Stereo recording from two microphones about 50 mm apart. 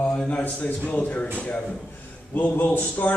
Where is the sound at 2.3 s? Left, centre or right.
Left.